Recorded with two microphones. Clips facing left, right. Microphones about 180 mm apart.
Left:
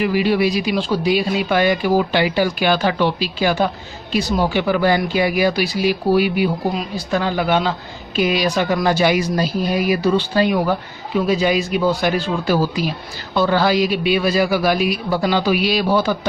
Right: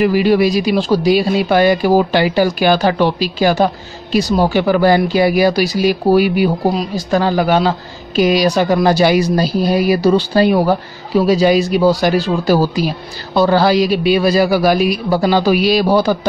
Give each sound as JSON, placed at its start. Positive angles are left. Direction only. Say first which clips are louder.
{"t": 0.0, "sound": "speech", "louder": "right 5 dB", "side_deg": -40}